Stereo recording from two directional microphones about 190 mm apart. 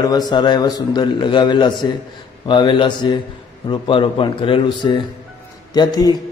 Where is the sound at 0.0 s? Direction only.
20° left (ahead or behind).